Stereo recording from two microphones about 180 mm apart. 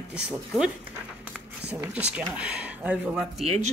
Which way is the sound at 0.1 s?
5° right (ahead or behind).